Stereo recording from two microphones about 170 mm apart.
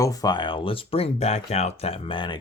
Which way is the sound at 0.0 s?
20° left (ahead or behind).